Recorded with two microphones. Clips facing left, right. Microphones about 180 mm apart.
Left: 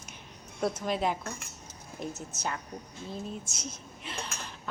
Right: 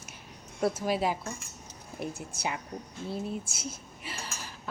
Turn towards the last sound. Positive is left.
turn(degrees=-5)  # may be behind; listen again after turning